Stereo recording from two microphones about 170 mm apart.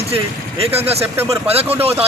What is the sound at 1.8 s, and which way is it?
Speech, 35° right (ahead or behind).